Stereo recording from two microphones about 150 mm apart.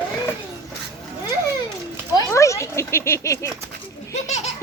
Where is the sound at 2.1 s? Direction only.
20° left (ahead or behind).